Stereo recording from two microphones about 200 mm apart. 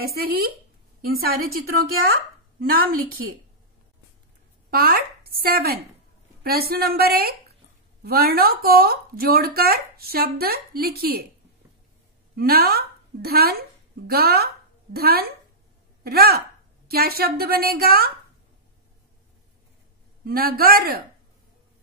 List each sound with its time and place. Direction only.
0.1 s speech: 50° right (ahead or behind)
4.6 s speech: 50° right (ahead or behind)
12.4 s a woman's voice: 50° right (ahead or behind)
20.2 s speech: 50° right (ahead or behind)